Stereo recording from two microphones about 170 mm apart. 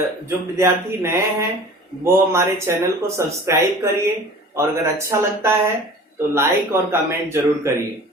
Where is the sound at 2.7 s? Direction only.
15° right (ahead or behind).